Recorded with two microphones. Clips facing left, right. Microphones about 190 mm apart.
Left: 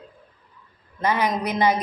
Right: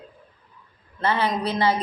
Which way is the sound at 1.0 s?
15° left (ahead or behind).